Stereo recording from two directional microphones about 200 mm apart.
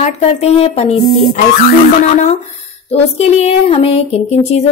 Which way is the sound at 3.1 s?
30° left (ahead or behind).